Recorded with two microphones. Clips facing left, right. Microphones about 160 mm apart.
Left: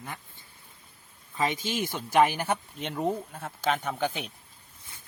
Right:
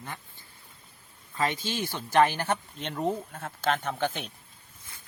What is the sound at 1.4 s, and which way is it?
Speech, 15° left (ahead or behind).